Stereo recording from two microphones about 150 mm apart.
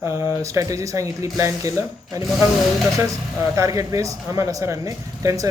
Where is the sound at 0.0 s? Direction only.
15° right (ahead or behind).